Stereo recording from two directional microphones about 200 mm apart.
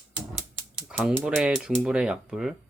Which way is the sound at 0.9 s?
5° right (ahead or behind).